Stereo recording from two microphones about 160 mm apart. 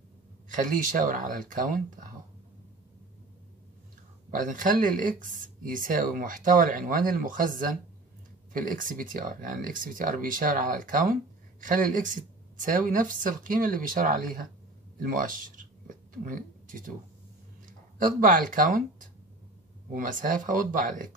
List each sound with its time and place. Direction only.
0.5 s speech: 55° right (ahead or behind)
4.3 s speech: 55° right (ahead or behind)
17.9 s speech: 55° right (ahead or behind)
19.9 s speech: 55° right (ahead or behind)